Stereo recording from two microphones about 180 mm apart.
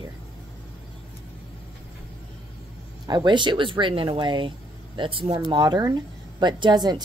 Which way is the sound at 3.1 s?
25° right (ahead or behind).